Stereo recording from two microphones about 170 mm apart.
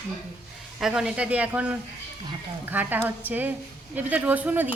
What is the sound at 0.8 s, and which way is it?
A woman's voice, 5° right (ahead or behind).